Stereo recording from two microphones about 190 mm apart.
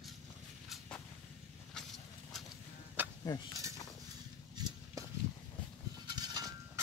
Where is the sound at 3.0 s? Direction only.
10° right (ahead or behind).